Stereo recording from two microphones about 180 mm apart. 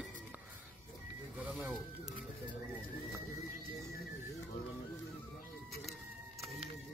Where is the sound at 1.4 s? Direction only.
10° right (ahead or behind).